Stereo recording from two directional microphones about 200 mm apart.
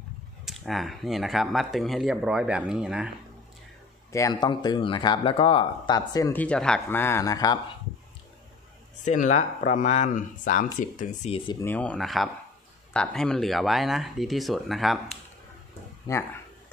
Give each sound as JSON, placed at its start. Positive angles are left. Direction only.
{"t": 0.5, "sound": "speech", "side_deg": 0}
{"t": 4.1, "sound": "speech", "side_deg": 20}
{"t": 6.4, "sound": "speech", "side_deg": 5}
{"t": 9.0, "sound": "speech", "side_deg": 35}
{"t": 11.6, "sound": "speech", "side_deg": 10}
{"t": 16.1, "sound": "a sound", "side_deg": 10}